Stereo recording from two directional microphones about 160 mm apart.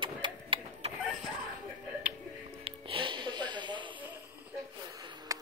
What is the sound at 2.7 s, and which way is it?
Music, 35° right (ahead or behind).